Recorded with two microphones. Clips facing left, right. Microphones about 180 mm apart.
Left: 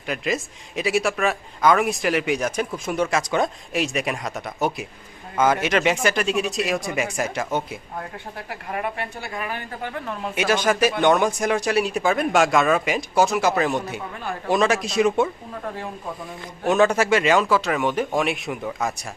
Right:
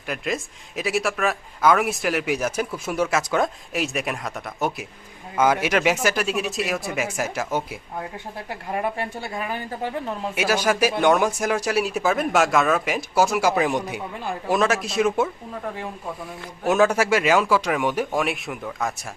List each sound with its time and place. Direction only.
0.1 s speech: centre (ahead or behind)
8.4 s speech: 25° right (ahead or behind)
10.3 s speech: 10° right (ahead or behind)
14.4 s speech: centre (ahead or behind)